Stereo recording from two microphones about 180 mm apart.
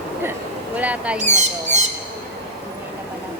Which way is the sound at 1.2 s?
40° right (ahead or behind).